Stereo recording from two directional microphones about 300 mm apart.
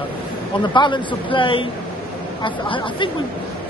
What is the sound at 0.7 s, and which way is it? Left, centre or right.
Speech, centre.